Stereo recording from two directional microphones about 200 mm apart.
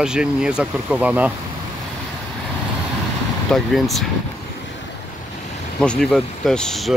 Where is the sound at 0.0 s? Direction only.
5° right (ahead or behind).